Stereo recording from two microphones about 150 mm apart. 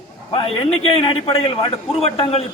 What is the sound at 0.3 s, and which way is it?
A man's voice, 35° left (ahead or behind).